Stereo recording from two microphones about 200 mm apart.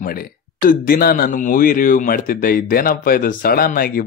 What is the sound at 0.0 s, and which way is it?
Speech, 45° left (ahead or behind).